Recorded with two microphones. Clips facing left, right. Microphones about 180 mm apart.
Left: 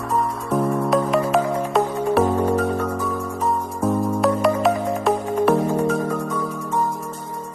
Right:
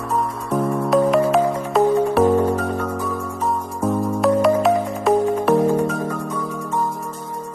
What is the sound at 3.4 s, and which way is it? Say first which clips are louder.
Music: even; centre (ahead or behind).